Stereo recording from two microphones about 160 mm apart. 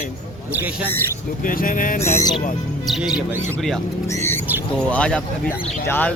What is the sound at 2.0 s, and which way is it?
Speech, 25° left (ahead or behind).